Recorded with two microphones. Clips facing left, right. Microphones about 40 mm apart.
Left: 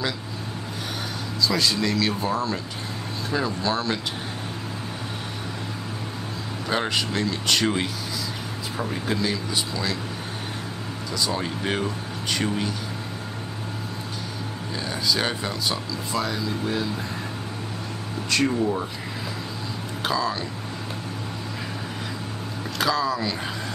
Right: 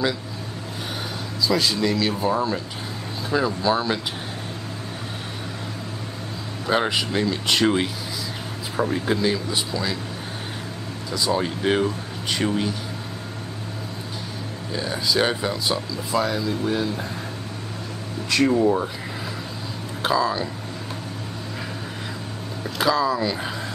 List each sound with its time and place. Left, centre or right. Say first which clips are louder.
1.4 s speech: right 2 dB; centre
6.7 s speech: right 3 dB; centre
11.1 s speech: right 4 dB; centre
14.8 s speech: right 3 dB; centre
18.5 s speech: right 5 dB; right
20.0 s speech: right 4 dB; centre
22.8 s speech: right 3 dB; centre